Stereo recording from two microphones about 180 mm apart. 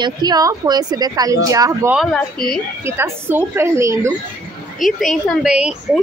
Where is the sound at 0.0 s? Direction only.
20° right (ahead or behind).